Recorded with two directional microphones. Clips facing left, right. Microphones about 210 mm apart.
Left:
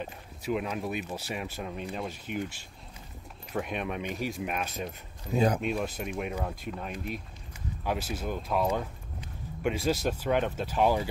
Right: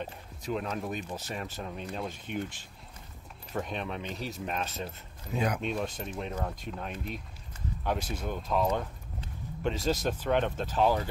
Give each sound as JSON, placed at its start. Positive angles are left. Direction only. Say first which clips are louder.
{"t": 0.0, "sound": "speech", "louder": "left 2 dB", "side_deg": 5}
{"t": 5.3, "sound": "speech", "louder": "left 5 dB", "side_deg": 30}
{"t": 5.6, "sound": "speech", "louder": "left 2 dB", "side_deg": 5}